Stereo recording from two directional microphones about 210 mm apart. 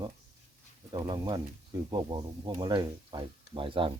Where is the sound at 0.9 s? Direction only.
20° right (ahead or behind).